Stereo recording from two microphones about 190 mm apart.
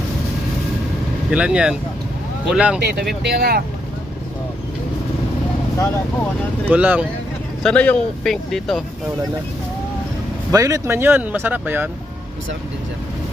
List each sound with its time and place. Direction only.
1.3 s speech: 5° right (ahead or behind)
3.2 s speech: 55° right (ahead or behind)
6.7 s speech: 10° right (ahead or behind)
7.6 s speech: 5° left (ahead or behind)
10.5 s speech: 15° right (ahead or behind)